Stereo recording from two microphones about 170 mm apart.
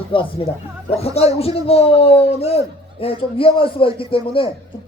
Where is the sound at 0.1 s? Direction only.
30° left (ahead or behind).